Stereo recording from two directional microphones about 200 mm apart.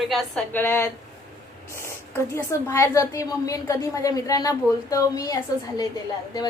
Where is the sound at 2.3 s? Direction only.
15° left (ahead or behind).